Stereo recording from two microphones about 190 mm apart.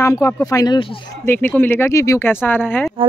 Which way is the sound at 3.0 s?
30° right (ahead or behind).